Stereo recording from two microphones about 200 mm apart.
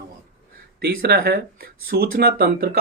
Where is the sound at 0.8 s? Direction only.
50° right (ahead or behind).